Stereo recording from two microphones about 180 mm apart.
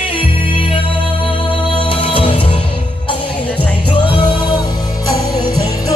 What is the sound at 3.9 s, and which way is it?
Music, 25° left (ahead or behind).